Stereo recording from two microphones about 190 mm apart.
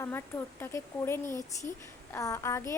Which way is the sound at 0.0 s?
10° left (ahead or behind).